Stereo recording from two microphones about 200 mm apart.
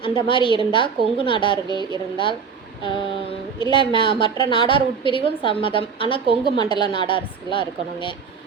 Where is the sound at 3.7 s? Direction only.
25° left (ahead or behind).